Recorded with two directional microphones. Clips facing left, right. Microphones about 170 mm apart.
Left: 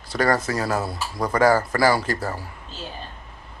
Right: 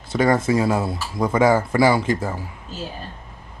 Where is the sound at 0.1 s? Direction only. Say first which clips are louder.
Right 4 dB; 20° right (ahead or behind).